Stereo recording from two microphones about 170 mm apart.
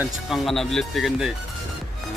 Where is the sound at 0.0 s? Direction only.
Centre (ahead or behind).